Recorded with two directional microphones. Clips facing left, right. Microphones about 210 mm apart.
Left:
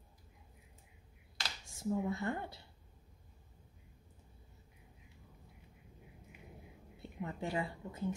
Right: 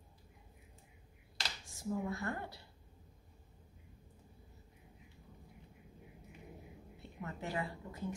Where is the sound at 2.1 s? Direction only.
25° left (ahead or behind).